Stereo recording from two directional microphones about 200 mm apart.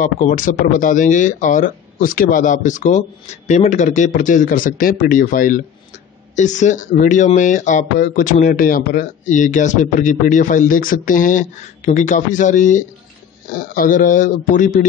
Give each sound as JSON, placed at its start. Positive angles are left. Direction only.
{"t": 0.0, "sound": "speech", "side_deg": 40}